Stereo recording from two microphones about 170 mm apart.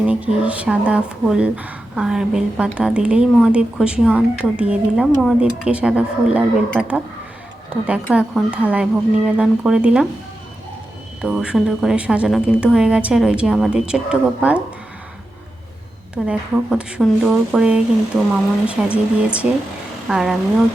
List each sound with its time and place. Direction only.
0.0 s a woman's voice: 5° right (ahead or behind)
11.2 s a woman's voice: 5° right (ahead or behind)
16.1 s a woman's voice: 5° right (ahead or behind)